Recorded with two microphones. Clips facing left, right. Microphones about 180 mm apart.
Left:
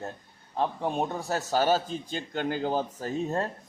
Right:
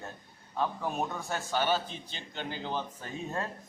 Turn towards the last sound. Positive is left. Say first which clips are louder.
# left 7 dB
turn(degrees=35)  # may be behind; listen again after turning